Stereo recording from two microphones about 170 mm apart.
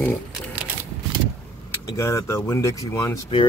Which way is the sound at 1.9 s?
15° left (ahead or behind).